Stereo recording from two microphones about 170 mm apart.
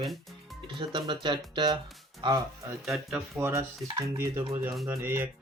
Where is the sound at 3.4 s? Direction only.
15° right (ahead or behind).